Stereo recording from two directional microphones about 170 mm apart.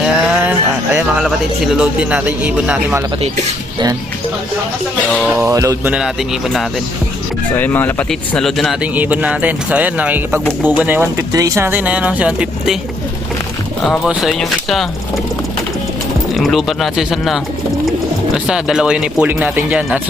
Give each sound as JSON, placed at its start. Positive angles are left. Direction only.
{"t": 0.0, "sound": "a sound", "side_deg": -5}
{"t": 0.9, "sound": "speech", "side_deg": -5}
{"t": 5.3, "sound": "speech", "side_deg": -15}
{"t": 7.5, "sound": "speech", "side_deg": 10}
{"t": 13.8, "sound": "speech", "side_deg": 0}
{"t": 16.3, "sound": "speech", "side_deg": 0}
{"t": 18.4, "sound": "speech", "side_deg": -5}